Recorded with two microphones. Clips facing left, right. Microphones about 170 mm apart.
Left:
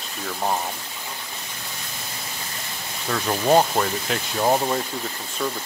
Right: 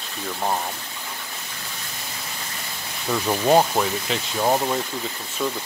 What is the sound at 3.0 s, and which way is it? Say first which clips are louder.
Speech: right 1 dB; 10° right (ahead or behind).